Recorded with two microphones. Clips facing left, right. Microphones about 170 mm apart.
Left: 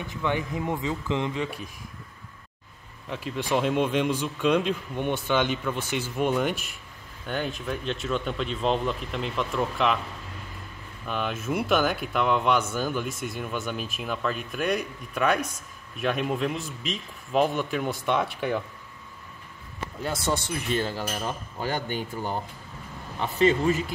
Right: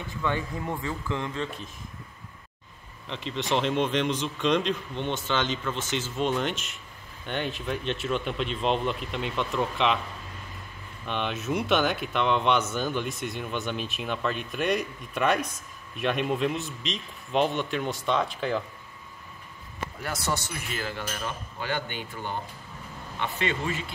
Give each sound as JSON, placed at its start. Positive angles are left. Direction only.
{"t": 0.1, "sound": "a man's voice", "side_deg": 15}
{"t": 3.1, "sound": "a man's voice", "side_deg": 10}
{"t": 11.1, "sound": "speech", "side_deg": 5}
{"t": 20.0, "sound": "speech", "side_deg": 25}
{"t": 20.7, "sound": "cutlery", "side_deg": 30}